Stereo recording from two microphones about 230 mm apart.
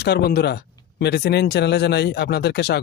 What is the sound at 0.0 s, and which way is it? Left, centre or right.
Speech, left.